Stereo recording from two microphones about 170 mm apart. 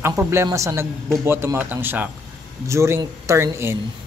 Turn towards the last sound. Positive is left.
turn(degrees=-15)  # may be behind; listen again after turning